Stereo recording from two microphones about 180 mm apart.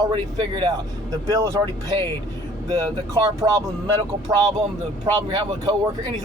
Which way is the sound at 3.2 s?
20° right (ahead or behind).